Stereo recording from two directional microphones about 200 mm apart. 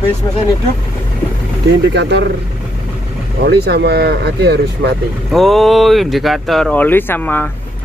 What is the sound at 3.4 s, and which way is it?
Speech, 55° right (ahead or behind).